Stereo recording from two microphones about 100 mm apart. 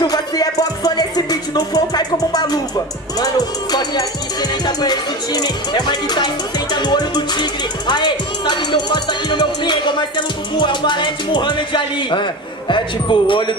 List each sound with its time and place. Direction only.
0.0 s music: 40° left (ahead or behind)